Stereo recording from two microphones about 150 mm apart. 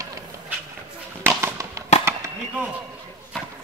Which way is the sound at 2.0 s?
15° right (ahead or behind).